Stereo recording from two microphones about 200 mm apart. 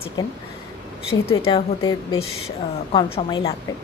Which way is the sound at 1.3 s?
30° left (ahead or behind).